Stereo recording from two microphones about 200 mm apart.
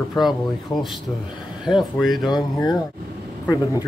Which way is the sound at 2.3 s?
20° left (ahead or behind).